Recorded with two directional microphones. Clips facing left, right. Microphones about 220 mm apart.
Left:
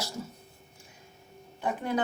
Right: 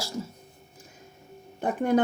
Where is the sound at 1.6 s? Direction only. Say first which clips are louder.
Right 6 dB; 50° right (ahead or behind).